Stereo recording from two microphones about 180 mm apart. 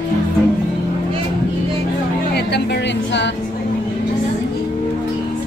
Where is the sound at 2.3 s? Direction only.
70° left (ahead or behind); by 3.3 s 85° left.